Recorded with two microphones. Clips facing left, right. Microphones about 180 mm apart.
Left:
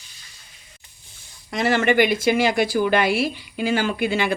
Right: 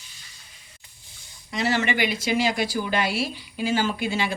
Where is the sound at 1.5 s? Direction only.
50° left (ahead or behind).